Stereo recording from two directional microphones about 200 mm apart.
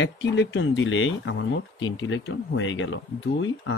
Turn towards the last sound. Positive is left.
turn(degrees=70)  # may be behind; listen again after turning